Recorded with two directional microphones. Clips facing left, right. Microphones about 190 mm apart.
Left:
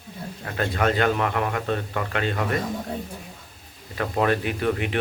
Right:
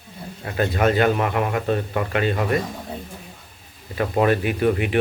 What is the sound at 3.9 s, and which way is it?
Speech, 15° right (ahead or behind).